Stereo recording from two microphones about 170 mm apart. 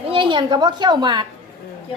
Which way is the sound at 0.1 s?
30° right (ahead or behind).